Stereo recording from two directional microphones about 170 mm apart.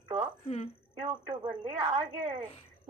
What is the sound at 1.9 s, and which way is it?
Speech, 40° right (ahead or behind).